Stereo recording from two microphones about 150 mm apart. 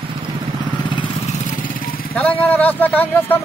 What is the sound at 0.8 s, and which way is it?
Vehicle, 30° left (ahead or behind).